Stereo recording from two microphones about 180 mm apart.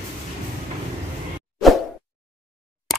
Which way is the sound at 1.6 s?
Centre (ahead or behind).